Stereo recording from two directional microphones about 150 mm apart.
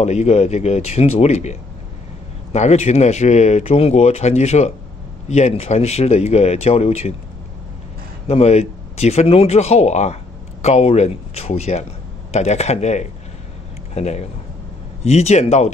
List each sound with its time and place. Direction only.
0.0 s speech: 50° left (ahead or behind)
8.3 s speech: 45° left (ahead or behind)